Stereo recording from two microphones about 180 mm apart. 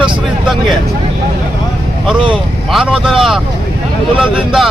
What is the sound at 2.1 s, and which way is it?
Speech, 25° right (ahead or behind).